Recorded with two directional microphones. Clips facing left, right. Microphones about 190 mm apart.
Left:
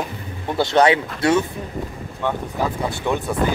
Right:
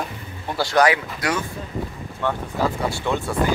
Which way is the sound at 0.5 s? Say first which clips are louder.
Left 2 dB; 25° left (ahead or behind).